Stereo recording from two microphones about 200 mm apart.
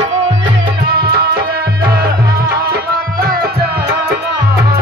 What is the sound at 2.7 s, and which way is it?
Tabla, 50° right (ahead or behind).